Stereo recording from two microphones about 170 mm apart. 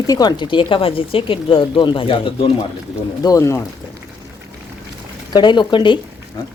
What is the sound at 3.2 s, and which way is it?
Speech, 20° left (ahead or behind).